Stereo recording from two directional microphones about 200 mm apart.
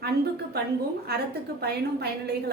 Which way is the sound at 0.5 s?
55° right (ahead or behind).